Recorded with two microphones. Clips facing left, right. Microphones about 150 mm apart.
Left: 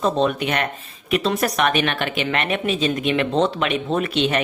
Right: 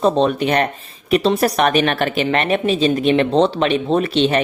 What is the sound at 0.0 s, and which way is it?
Speech, 35° right (ahead or behind).